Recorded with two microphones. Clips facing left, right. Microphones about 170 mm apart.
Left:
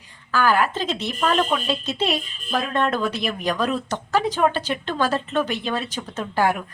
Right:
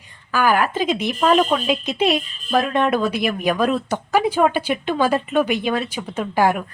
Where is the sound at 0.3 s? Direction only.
15° right (ahead or behind).